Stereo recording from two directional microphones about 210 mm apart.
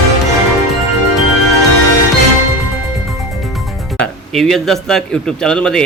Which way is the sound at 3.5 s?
Centre (ahead or behind).